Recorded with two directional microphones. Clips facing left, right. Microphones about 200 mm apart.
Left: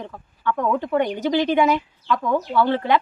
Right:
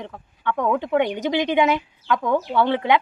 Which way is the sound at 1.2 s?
15° right (ahead or behind).